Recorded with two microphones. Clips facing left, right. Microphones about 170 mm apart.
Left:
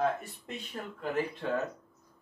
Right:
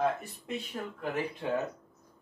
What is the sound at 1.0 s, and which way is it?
Speech, 15° right (ahead or behind).